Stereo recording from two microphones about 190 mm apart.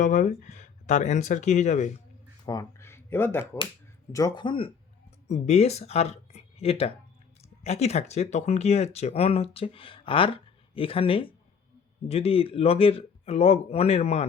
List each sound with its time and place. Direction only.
0.0 s speech: 40° left (ahead or behind)
2.5 s speech: 15° left (ahead or behind); by 14.3 s 35° left (ahead or behind)